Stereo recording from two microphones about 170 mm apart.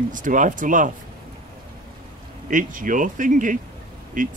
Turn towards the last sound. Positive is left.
turn(degrees=-50)  # may be behind; listen again after turning